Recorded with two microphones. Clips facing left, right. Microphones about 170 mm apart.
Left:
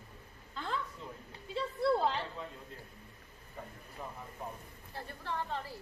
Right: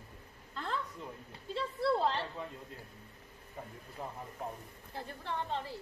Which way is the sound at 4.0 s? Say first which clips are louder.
Right 2 dB; 25° right (ahead or behind).